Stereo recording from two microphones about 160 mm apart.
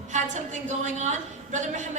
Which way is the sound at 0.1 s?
50° right (ahead or behind).